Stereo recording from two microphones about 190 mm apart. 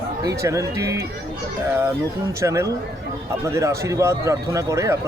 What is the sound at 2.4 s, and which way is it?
Speech, 15° right (ahead or behind).